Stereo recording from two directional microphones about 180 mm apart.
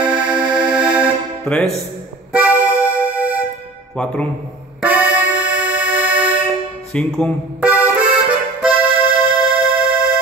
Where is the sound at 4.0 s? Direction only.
5° left (ahead or behind).